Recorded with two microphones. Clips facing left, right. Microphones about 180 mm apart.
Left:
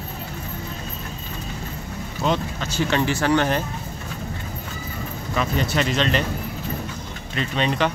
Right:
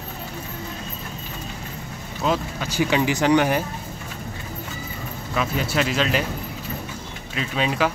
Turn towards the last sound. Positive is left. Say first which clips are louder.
# left 1 dB
turn(degrees=-5)  # may be behind; listen again after turning